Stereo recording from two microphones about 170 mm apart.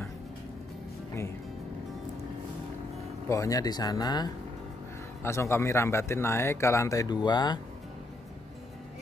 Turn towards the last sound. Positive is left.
turn(degrees=25)  # may be behind; listen again after turning